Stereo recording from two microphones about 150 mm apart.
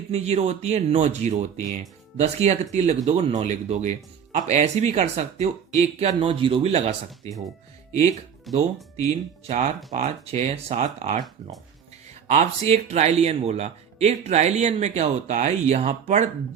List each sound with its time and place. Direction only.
0.1 s speech: 45° right (ahead or behind)
6.1 s a man's voice: 35° right (ahead or behind)
8.5 s speech: centre (ahead or behind)
9.5 s speech: 50° right (ahead or behind)